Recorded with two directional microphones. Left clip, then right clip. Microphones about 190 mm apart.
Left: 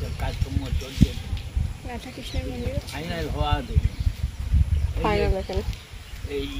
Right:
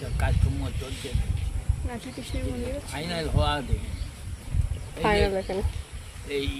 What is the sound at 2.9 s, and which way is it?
Speech, centre (ahead or behind).